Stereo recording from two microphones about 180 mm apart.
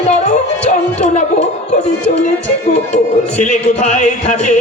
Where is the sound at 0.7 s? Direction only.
45° left (ahead or behind).